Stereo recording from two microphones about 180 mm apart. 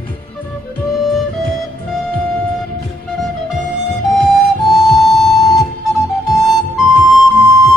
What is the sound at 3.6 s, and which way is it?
Flute, centre (ahead or behind).